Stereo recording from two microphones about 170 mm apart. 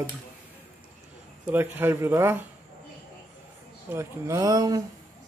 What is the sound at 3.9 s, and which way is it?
Speech, 15° right (ahead or behind).